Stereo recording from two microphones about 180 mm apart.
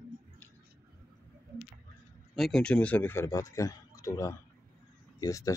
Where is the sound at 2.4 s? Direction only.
5° left (ahead or behind).